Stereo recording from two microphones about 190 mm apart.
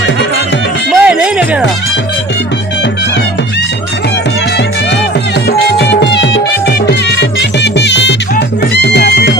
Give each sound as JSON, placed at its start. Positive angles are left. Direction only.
{"t": 0.9, "sound": "music", "side_deg": -5}
{"t": 5.5, "sound": "music", "side_deg": 60}